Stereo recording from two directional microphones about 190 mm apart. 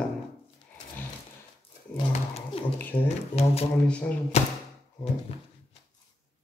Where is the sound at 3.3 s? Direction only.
35° left (ahead or behind).